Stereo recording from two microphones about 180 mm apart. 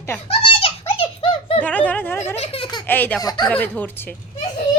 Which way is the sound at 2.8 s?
10° left (ahead or behind).